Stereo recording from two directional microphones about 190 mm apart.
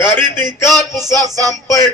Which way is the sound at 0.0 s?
10° left (ahead or behind).